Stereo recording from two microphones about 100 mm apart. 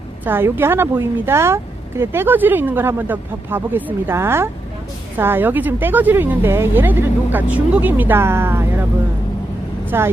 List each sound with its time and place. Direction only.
0.3 s speech: 20° right (ahead or behind)
9.9 s speech: 25° right (ahead or behind)